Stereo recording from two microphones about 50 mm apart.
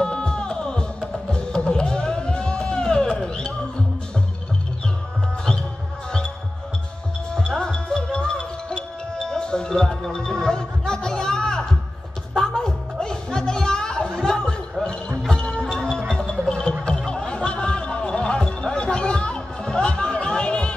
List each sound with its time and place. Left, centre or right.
0.0 s music: centre
7.3 s music: centre
14.2 s a sound: centre
15.2 s music: centre
17.5 s basketball bounce: centre